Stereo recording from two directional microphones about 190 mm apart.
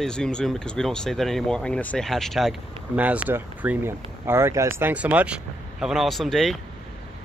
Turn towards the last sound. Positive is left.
turn(degrees=0)  # may be behind; listen again after turning